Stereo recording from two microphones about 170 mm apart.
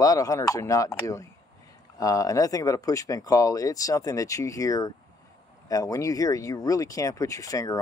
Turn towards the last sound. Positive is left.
turn(degrees=20)  # may be behind; listen again after turning